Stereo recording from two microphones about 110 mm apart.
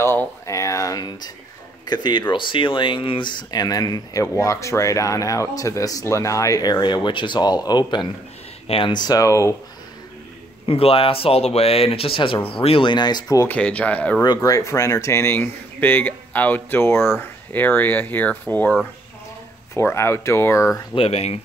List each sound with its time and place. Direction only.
0.0 s a sound: 20° left (ahead or behind); by 1.3 s 40° left (ahead or behind)
1.9 s speech: 45° left (ahead or behind)
8.6 s speech: 55° left (ahead or behind)
8.9 s speech: 35° left (ahead or behind)
10.7 s speech: 60° left (ahead or behind); by 13.5 s 35° left (ahead or behind)
13.5 s speech: 10° left (ahead or behind)
14.2 s speech: 35° left (ahead or behind)
20.9 s speech: 60° left (ahead or behind)